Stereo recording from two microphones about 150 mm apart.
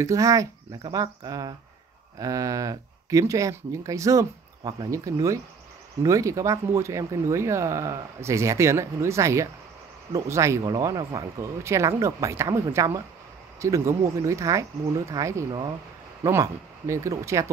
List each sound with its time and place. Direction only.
0.0 s speech: 20° right (ahead or behind)